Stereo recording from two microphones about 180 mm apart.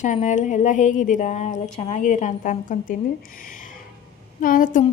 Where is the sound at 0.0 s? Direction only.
40° left (ahead or behind).